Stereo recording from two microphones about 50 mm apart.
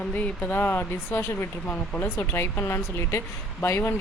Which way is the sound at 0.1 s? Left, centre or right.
Left.